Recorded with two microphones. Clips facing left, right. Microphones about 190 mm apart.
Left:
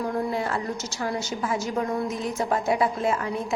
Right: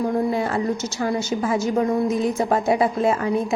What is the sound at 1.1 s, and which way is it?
A woman's voice, 20° right (ahead or behind).